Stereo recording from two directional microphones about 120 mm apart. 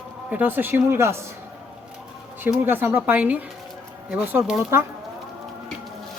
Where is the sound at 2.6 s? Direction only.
15° right (ahead or behind).